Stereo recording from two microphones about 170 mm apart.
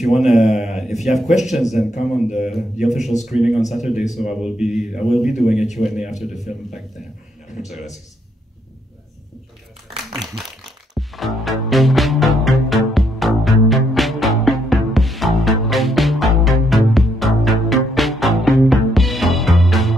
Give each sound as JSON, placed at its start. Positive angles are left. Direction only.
{"t": 0.0, "sound": "a man's voice", "side_deg": 0}
{"t": 1.9, "sound": "speech", "side_deg": 45}
{"t": 2.4, "sound": "a man's voice", "side_deg": 0}
{"t": 11.0, "sound": "music", "side_deg": 0}